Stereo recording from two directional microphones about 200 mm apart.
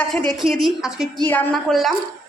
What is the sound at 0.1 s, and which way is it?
A woman's voice, centre (ahead or behind).